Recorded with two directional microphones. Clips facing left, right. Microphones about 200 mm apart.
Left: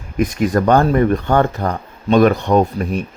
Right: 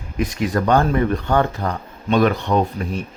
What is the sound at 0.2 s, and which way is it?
Speech, 50° left (ahead or behind).